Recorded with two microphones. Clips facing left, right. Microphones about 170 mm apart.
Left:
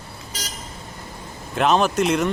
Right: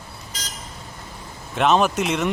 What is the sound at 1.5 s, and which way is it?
Speech, centre (ahead or behind).